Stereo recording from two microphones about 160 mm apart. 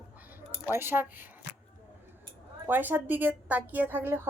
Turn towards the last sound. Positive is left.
turn(degrees=-15)  # may be behind; listen again after turning